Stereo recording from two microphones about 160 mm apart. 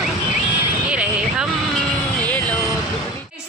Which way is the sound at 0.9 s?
5° right (ahead or behind).